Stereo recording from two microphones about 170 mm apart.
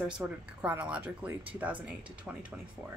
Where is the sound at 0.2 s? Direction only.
10° right (ahead or behind).